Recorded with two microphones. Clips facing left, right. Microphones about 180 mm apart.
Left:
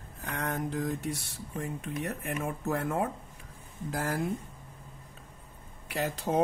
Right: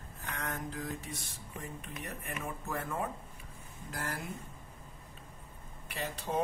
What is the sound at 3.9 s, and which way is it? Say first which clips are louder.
Speech: left 8 dB; 90° left.